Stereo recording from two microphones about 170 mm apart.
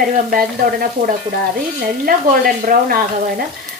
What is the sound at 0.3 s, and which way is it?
Speech, 60° right (ahead or behind).